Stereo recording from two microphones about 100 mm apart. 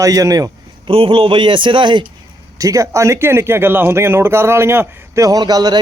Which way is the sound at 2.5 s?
35° right (ahead or behind).